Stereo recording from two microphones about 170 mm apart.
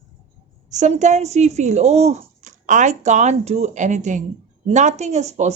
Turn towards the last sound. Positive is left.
turn(degrees=-40)  # may be behind; listen again after turning